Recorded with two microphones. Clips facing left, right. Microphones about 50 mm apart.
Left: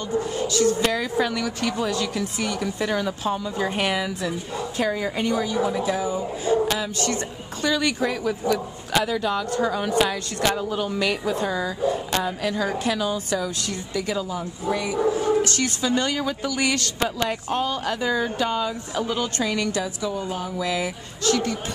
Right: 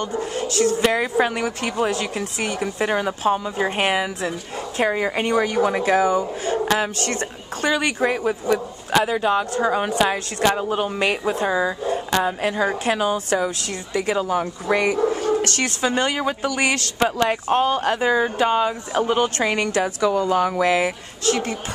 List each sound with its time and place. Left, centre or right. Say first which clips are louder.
0.0 s speech: even; right
0.9 s a woman's voice: right 3 dB; right
2.5 s a woman's voice: right 4 dB; right
6.6 s a woman's voice: right 3 dB; right
7.8 s a woman's voice: right 3 dB; right
14.2 s a woman's voice: right 5 dB; right
15.9 s speech: right 2 dB; right
17.0 s speech: right 8 dB; right
20.6 s a woman's voice: right 7 dB; right